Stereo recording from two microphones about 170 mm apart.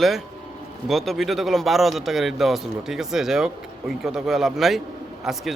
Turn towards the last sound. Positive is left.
turn(degrees=0)  # may be behind; listen again after turning